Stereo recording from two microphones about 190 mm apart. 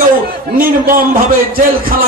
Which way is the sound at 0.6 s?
50° right (ahead or behind).